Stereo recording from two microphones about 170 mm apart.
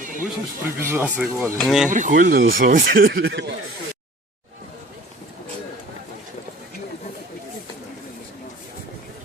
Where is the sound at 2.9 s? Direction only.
70° right (ahead or behind); by 3.5 s 90° right.